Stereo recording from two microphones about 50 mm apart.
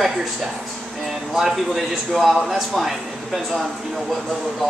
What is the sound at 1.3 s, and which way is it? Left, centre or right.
Speech, centre.